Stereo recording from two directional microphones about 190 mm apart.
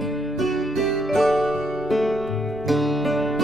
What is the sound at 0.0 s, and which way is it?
Music, centre (ahead or behind).